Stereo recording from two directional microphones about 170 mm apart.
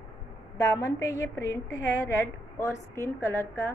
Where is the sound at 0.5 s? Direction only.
20° left (ahead or behind).